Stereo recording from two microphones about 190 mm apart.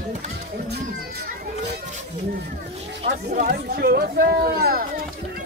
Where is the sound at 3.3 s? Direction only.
50° right (ahead or behind).